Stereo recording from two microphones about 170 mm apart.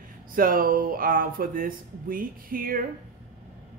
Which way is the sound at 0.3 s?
55° right (ahead or behind).